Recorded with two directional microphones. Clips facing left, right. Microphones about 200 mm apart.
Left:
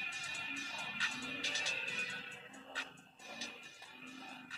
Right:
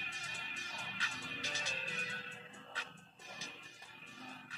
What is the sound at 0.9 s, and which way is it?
Music, 55° right (ahead or behind).